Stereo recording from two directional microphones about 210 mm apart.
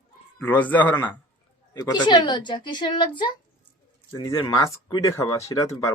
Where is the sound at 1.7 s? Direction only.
20° left (ahead or behind).